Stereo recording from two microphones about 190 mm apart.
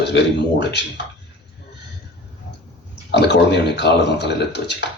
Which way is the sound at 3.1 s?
65° left (ahead or behind).